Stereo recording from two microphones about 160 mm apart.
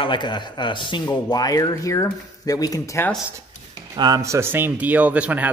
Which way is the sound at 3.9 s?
25° right (ahead or behind).